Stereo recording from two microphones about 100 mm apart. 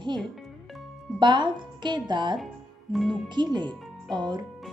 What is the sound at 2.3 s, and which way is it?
Speech, centre (ahead or behind).